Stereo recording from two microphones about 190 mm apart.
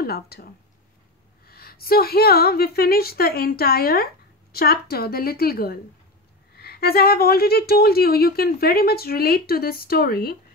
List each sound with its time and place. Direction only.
0.0 s speech: 55° left (ahead or behind)
1.5 s a woman's voice: 55° left (ahead or behind)